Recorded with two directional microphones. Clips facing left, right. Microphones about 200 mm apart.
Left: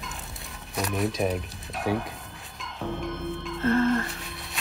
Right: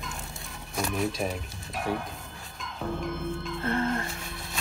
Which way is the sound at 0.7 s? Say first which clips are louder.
Left 2 dB; centre (ahead or behind).